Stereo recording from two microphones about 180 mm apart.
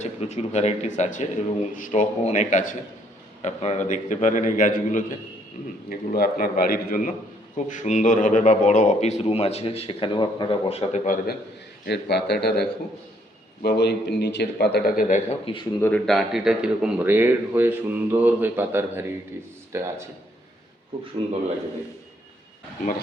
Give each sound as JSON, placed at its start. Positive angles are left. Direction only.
{"t": 0.0, "sound": "a man's voice", "side_deg": 40}
{"t": 11.9, "sound": "a man's voice", "side_deg": 70}
{"t": 15.3, "sound": "a man's voice", "side_deg": 30}
{"t": 15.8, "sound": "a man's voice", "side_deg": 5}